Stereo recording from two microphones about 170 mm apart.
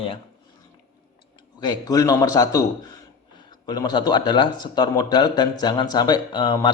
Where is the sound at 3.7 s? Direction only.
25° left (ahead or behind).